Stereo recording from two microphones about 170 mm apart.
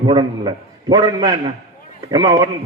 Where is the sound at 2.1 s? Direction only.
25° right (ahead or behind).